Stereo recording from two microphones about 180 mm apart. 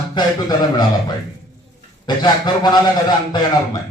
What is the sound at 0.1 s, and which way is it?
A man's voice, 25° left (ahead or behind).